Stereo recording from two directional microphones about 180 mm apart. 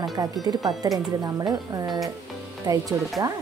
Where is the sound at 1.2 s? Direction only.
20° right (ahead or behind).